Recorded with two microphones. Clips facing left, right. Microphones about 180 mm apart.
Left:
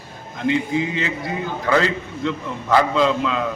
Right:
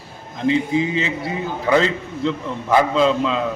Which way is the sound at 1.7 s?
25° right (ahead or behind).